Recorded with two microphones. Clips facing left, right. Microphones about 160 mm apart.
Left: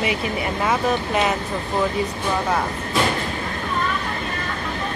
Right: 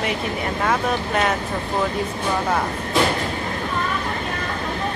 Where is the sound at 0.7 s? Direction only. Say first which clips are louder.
Left 1 dB; 5° left (ahead or behind).